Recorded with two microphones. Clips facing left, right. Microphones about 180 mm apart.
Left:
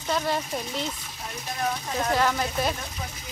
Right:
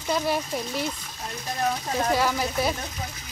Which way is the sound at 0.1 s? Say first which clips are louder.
Right 1 dB; 10° right (ahead or behind).